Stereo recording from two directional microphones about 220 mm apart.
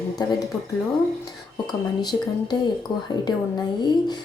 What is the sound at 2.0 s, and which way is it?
A woman's voice, 20° left (ahead or behind).